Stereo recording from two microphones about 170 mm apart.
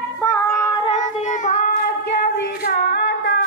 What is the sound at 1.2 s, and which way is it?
Child singing, 45° left (ahead or behind).